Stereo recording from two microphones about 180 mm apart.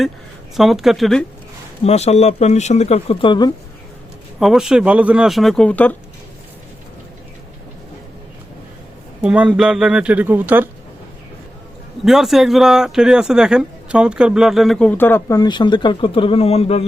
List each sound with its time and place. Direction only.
0.5 s speech: centre (ahead or behind)
1.8 s speech: 35° left (ahead or behind)
4.4 s speech: centre (ahead or behind)
9.2 s speech: 5° right (ahead or behind)
12.0 s speech: centre (ahead or behind); by 16.8 s 35° left (ahead or behind)